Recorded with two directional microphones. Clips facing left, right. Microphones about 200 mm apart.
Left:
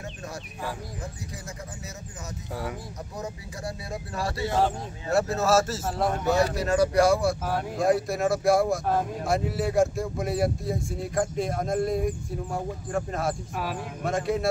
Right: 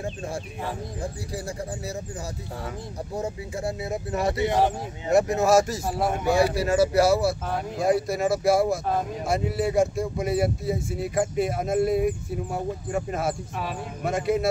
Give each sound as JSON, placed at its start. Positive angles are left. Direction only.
{"t": 3.2, "sound": "speech", "side_deg": -25}